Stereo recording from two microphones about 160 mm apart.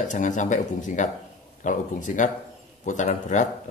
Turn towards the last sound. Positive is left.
turn(degrees=50)  # may be behind; listen again after turning